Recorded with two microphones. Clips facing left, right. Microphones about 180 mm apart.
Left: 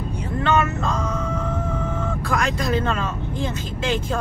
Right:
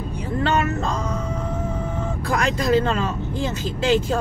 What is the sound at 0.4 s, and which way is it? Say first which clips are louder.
Speech: left 1 dB; 35° right (ahead or behind).